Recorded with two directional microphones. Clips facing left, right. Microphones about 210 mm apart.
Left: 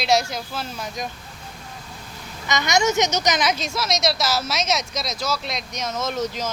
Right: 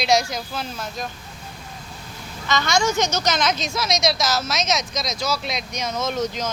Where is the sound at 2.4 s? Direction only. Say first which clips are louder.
Left 1 dB; 15° left (ahead or behind).